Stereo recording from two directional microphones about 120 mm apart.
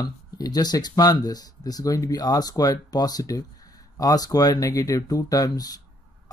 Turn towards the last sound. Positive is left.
turn(degrees=30)  # may be behind; listen again after turning